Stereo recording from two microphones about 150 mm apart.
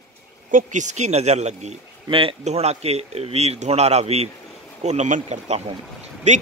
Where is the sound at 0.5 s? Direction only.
60° right (ahead or behind).